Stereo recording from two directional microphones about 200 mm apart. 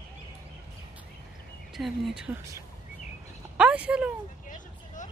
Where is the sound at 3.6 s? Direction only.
5° right (ahead or behind).